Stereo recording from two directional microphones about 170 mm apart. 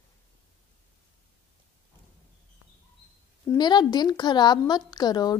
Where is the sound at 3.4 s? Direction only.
25° left (ahead or behind).